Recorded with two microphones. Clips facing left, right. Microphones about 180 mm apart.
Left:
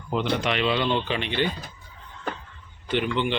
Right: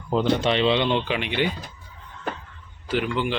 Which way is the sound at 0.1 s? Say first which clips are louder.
Right 4 dB; 30° right (ahead or behind).